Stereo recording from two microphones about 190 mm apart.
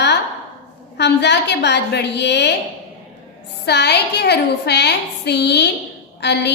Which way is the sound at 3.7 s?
60° left (ahead or behind).